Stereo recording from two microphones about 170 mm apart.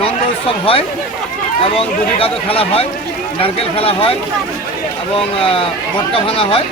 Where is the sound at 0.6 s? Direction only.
35° left (ahead or behind).